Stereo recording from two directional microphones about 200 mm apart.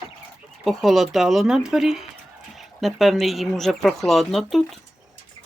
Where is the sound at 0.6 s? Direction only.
Centre (ahead or behind).